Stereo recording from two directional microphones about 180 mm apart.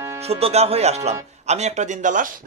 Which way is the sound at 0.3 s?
35° right (ahead or behind).